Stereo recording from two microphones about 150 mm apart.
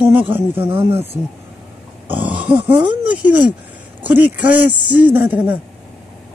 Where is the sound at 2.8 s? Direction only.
10° right (ahead or behind).